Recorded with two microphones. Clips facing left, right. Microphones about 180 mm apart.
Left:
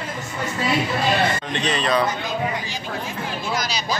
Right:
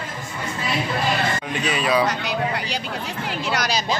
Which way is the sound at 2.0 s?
80° right.